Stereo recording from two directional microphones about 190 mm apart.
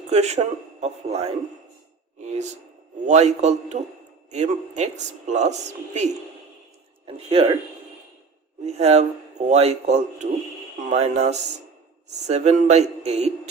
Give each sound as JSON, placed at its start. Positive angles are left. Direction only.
{"t": 0.1, "sound": "a woman's voice", "side_deg": -35}
{"t": 3.1, "sound": "a woman's voice", "side_deg": -35}
{"t": 7.3, "sound": "a woman's voice", "side_deg": -30}
{"t": 8.6, "sound": "a woman's voice", "side_deg": -35}